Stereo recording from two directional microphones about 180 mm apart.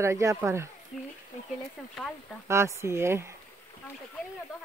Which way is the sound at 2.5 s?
15° right (ahead or behind).